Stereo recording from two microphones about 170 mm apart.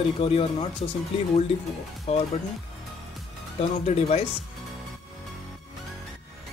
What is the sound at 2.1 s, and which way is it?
Speech, 35° left (ahead or behind).